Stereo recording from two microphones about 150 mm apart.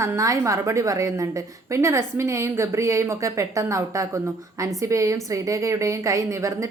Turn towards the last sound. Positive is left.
turn(degrees=-20)  # may be behind; listen again after turning